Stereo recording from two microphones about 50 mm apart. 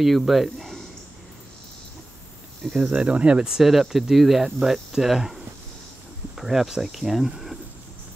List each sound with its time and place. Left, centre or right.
0.0 s speech: centre
2.8 s speech: right
3.4 s speech: centre